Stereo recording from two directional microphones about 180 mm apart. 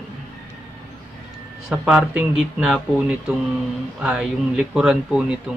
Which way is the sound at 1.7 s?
5° right (ahead or behind).